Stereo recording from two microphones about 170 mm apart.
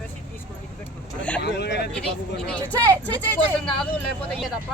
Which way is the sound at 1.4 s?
75° left (ahead or behind).